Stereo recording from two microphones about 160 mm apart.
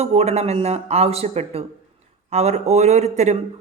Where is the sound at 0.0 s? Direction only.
40° right (ahead or behind).